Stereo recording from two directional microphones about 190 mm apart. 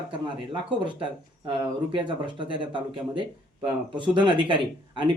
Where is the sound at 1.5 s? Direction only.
25° right (ahead or behind).